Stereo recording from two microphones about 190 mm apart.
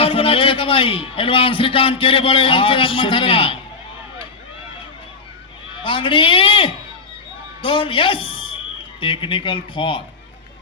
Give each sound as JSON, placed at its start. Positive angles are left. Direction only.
{"t": 0.0, "sound": "a man's voice", "side_deg": 30}
{"t": 5.8, "sound": "a man's voice", "side_deg": 25}